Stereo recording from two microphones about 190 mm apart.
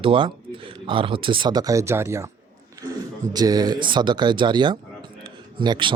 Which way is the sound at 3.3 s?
20° right (ahead or behind).